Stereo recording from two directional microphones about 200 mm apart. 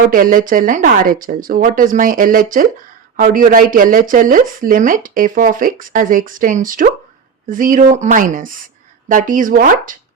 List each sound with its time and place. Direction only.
0.1 s speech: 45° right (ahead or behind)